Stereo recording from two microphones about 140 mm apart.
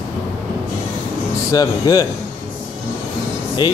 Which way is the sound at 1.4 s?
25° left (ahead or behind).